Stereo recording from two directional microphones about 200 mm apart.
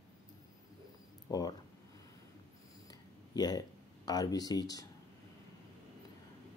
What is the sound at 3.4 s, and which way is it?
Speech, 20° left (ahead or behind).